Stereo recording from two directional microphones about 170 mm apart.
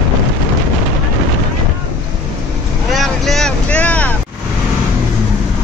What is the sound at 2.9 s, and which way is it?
Vehicle, centre (ahead or behind).